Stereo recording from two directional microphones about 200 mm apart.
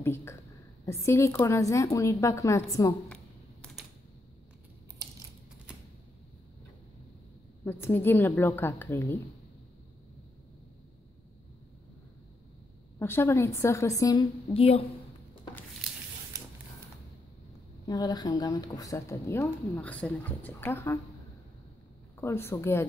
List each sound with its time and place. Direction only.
0.0 s a woman's voice: 10° left (ahead or behind)
3.6 s typewriter: 5° left (ahead or behind)
7.6 s a woman's voice: 10° left (ahead or behind)
13.0 s a woman's voice: 10° left (ahead or behind)
14.5 s a woman's voice: 30° left (ahead or behind)
16.3 s a sound: 15° right (ahead or behind)
17.8 s a woman's voice: 20° left (ahead or behind)
22.2 s a woman's voice: 10° left (ahead or behind)